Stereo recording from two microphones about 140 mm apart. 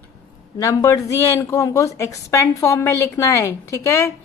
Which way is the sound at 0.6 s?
25° left (ahead or behind).